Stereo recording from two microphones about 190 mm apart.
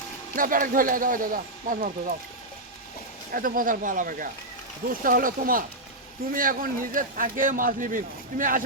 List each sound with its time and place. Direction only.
0.3 s a man's voice: 45° right (ahead or behind)
3.3 s a man's voice: 50° right (ahead or behind)